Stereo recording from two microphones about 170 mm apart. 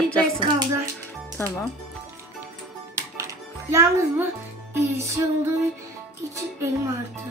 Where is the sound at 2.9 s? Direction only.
15° right (ahead or behind).